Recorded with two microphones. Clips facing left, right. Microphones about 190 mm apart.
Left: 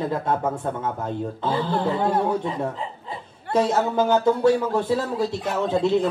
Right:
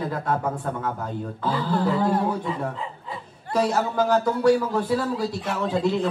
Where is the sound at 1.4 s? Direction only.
25° left (ahead or behind).